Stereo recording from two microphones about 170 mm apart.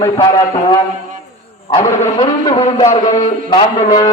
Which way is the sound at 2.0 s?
35° left (ahead or behind).